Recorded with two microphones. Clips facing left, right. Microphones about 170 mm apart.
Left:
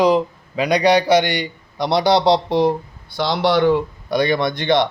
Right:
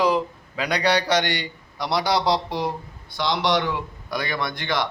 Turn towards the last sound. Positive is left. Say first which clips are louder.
# left 8 dB
turn(degrees=25)  # may be behind; listen again after turning